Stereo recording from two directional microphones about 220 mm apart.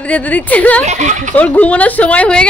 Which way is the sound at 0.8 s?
35° right (ahead or behind).